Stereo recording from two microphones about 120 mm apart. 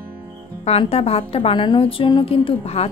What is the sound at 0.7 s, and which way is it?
A woman's voice, 60° left (ahead or behind).